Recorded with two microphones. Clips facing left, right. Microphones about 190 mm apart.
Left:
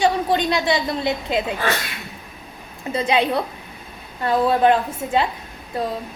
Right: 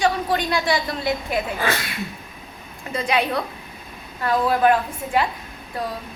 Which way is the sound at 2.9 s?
25° left (ahead or behind).